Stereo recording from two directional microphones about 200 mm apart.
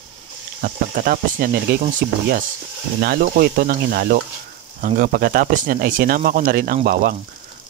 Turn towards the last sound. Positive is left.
turn(degrees=-50)  # may be behind; listen again after turning